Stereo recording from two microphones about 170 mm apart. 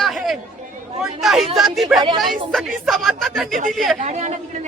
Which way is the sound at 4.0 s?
40° right (ahead or behind).